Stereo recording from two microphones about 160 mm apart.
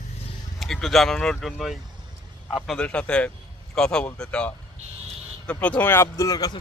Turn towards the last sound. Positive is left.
turn(degrees=20)  # may be behind; listen again after turning